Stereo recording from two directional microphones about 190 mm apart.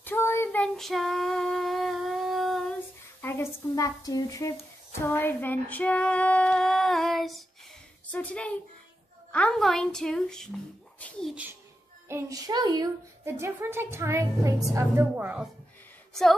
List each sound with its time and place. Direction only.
0.0 s female singing: 10° left (ahead or behind)
3.2 s speech: 10° left (ahead or behind)
4.9 s female singing: 10° left (ahead or behind)
8.1 s speech: 5° left (ahead or behind)
12.1 s speech: 15° right (ahead or behind)